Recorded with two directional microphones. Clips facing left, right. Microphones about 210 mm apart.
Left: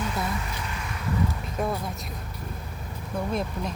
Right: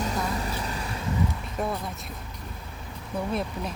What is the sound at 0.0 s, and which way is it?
Vehicle, 35° right (ahead or behind).